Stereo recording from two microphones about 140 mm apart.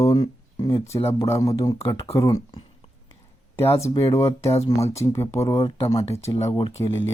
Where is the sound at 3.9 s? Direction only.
40° left (ahead or behind).